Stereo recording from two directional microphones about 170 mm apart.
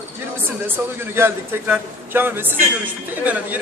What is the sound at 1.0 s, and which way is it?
Speech, 15° right (ahead or behind).